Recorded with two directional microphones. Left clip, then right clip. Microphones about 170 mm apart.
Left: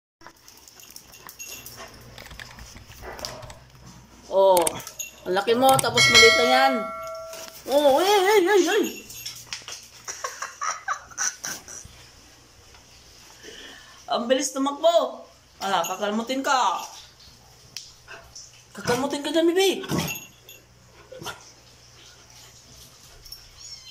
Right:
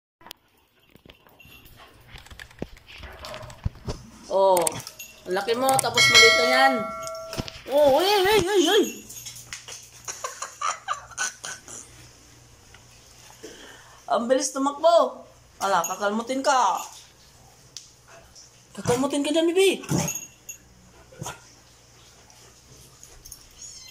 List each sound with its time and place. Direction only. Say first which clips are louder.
2.2 s a sound: left 3 dB; centre (ahead or behind)
4.3 s typing: left 2 dB; 5° left (ahead or behind)
5.2 s bell: left 4 dB; 5° left (ahead or behind)
7.9 s speech: left 1 dB; centre (ahead or behind)
10.0 s a sound: left 1 dB; 5° right (ahead or behind)
14.0 s speech: right 1 dB; 5° right (ahead or behind)
18.8 s speech: right 1 dB; centre (ahead or behind)